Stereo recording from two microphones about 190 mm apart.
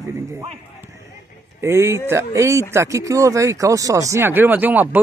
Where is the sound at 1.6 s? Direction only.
15° right (ahead or behind).